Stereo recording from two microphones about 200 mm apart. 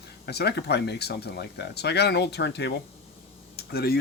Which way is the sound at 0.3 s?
55° left (ahead or behind).